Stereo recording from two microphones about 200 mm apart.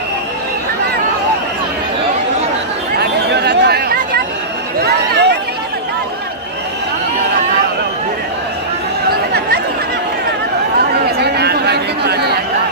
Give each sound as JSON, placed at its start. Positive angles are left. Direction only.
{"t": 3.0, "sound": "chatter", "side_deg": -55}
{"t": 4.7, "sound": "a sound", "side_deg": -55}
{"t": 9.1, "sound": "chatter", "side_deg": -50}
{"t": 10.9, "sound": "chatter", "side_deg": -55}